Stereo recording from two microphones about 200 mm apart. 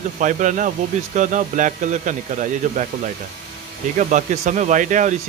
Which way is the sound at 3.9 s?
35° right (ahead or behind).